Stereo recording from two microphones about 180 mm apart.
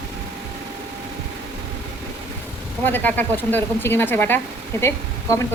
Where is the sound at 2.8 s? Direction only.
10° left (ahead or behind).